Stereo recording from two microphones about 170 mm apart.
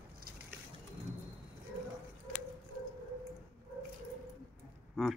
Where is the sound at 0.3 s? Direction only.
60° right (ahead or behind).